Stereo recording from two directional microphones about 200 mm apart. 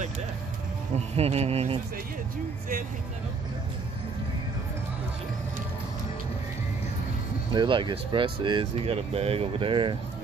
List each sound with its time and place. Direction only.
0.9 s speech: 30° right (ahead or behind)
7.5 s speech: 25° right (ahead or behind)